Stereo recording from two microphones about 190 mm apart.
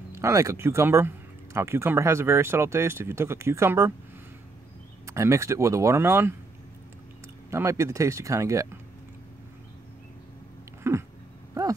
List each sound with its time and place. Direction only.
0.1 s speech: 15° right (ahead or behind)
5.0 s speech: 15° right (ahead or behind)
7.5 s speech: 15° right (ahead or behind)
10.8 s cat: 15° right (ahead or behind)